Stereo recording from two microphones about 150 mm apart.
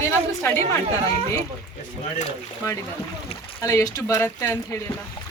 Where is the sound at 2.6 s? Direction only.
20° left (ahead or behind).